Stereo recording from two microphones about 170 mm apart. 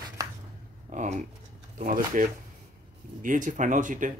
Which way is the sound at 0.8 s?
45° right (ahead or behind).